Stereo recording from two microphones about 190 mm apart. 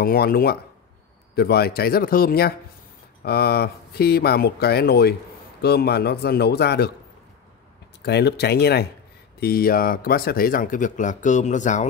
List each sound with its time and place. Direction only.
0.0 s speech: 50° left (ahead or behind)
8.0 s speech: 60° left (ahead or behind); by 11.8 s 40° left (ahead or behind)